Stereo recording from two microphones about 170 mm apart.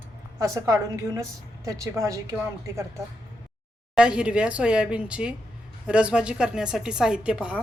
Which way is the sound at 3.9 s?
5° right (ahead or behind).